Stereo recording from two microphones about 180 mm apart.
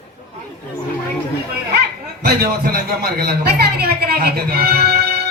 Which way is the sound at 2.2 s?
55° right (ahead or behind).